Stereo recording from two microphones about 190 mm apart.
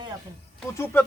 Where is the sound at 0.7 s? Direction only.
10° left (ahead or behind).